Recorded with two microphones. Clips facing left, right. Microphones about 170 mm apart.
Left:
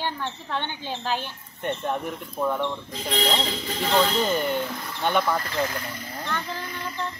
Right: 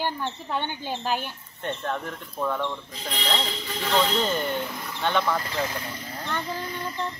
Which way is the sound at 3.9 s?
5° left (ahead or behind).